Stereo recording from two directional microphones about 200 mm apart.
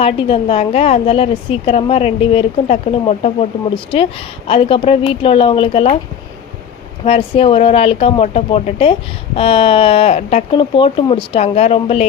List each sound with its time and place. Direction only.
0.0 s speech: 25° left (ahead or behind)
7.0 s speech: 30° left (ahead or behind)